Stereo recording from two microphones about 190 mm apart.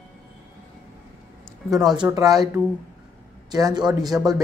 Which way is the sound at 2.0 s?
20° right (ahead or behind).